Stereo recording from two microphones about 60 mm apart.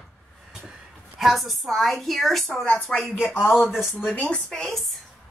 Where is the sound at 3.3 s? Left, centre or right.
Left.